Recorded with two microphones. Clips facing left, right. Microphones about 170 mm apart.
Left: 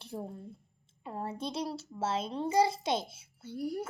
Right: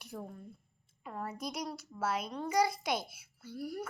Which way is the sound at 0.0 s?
30° left (ahead or behind).